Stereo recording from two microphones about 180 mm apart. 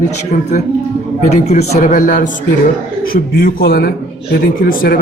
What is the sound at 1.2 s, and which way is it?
A man's voice, 35° left (ahead or behind).